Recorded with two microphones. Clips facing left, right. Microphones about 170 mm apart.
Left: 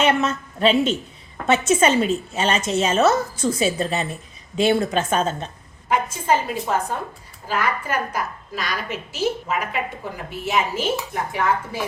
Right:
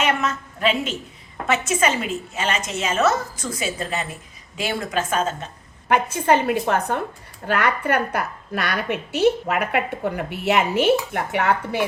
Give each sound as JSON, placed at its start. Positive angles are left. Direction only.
{"t": 0.0, "sound": "a woman's voice", "side_deg": 30}
{"t": 5.9, "sound": "a woman's voice", "side_deg": -65}
{"t": 11.1, "sound": "dishes", "side_deg": -70}